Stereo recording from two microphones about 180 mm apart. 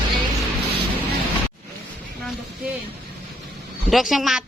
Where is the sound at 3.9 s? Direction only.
Centre (ahead or behind).